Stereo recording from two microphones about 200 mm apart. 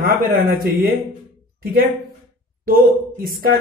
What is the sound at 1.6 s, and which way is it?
Speech, 50° right (ahead or behind).